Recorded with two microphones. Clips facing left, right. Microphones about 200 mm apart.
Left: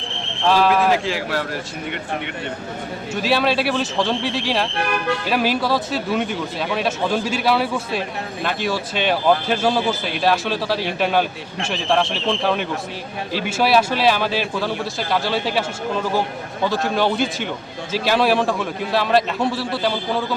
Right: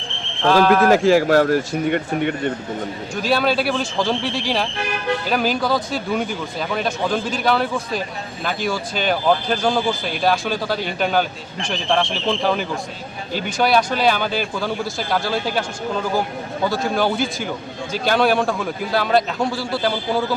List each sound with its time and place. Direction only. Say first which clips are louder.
0.4 s speech: right 2 dB; centre (ahead or behind)
0.9 s a man's voice: right 9 dB; 45° right (ahead or behind)
3.2 s speech: even; centre (ahead or behind)
16.6 s speech: even; centre (ahead or behind)